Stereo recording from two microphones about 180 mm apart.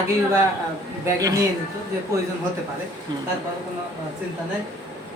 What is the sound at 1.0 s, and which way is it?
Speech, 20° right (ahead or behind).